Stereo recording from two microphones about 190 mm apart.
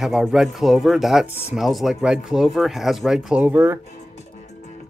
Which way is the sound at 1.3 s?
35° left (ahead or behind).